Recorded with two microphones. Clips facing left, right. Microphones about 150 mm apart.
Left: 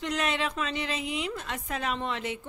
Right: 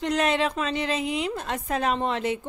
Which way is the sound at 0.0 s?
35° right (ahead or behind).